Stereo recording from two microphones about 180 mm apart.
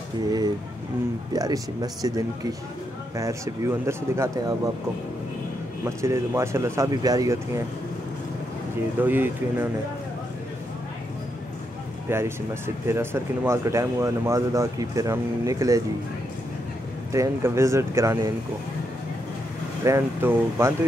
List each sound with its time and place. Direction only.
1.3 s speech: 20° right (ahead or behind)
5.9 s speech: 15° right (ahead or behind)
9.0 s speech: 10° right (ahead or behind)
12.1 s speech: 15° right (ahead or behind)
17.1 s speech: 15° right (ahead or behind)
19.8 s speech: 15° right (ahead or behind)